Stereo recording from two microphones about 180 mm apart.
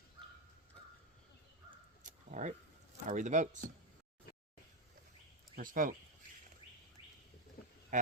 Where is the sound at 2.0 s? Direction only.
45° right (ahead or behind).